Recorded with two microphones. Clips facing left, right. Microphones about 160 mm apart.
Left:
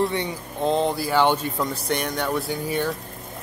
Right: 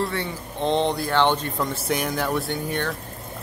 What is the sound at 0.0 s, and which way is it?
Speech, 20° left (ahead or behind).